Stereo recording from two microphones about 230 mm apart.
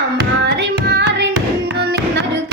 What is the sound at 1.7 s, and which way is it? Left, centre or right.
Music, right.